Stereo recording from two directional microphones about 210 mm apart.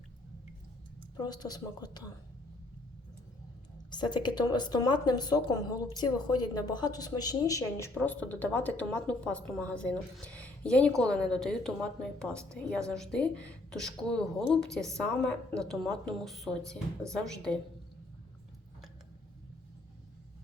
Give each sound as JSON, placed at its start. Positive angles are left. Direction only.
{"t": 1.1, "sound": "speech", "side_deg": 20}
{"t": 3.9, "sound": "a woman's voice", "side_deg": 20}